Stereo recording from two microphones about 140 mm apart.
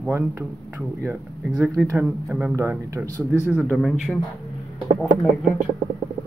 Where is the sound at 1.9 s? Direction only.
15° right (ahead or behind).